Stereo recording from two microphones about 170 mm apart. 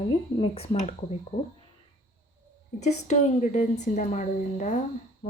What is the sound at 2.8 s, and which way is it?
Speech, 45° left (ahead or behind).